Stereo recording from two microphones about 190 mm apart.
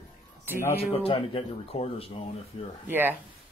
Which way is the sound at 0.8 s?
30° left (ahead or behind).